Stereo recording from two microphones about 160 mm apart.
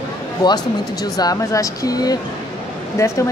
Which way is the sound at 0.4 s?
25° left (ahead or behind).